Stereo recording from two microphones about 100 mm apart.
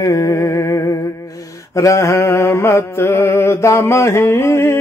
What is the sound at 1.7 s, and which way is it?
Mantra, 30° left (ahead or behind).